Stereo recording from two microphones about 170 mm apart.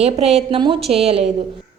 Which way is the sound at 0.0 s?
40° right (ahead or behind).